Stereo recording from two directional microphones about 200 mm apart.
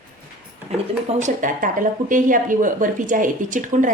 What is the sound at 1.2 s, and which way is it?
Speech, 40° right (ahead or behind).